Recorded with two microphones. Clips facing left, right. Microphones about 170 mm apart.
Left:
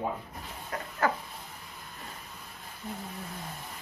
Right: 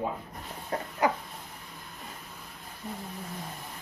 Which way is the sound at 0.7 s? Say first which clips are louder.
Right 5 dB; 30° right (ahead or behind).